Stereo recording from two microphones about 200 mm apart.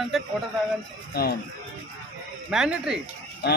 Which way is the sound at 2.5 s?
5° right (ahead or behind).